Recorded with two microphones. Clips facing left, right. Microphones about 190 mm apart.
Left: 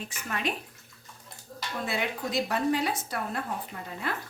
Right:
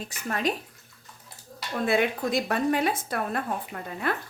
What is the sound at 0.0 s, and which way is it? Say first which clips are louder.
Speech: right 4 dB; 40° right (ahead or behind).